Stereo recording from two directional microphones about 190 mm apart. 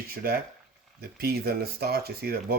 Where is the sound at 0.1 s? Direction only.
55° right (ahead or behind).